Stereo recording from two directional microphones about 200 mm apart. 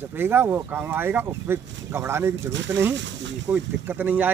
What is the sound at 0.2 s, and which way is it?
Speech, 10° right (ahead or behind).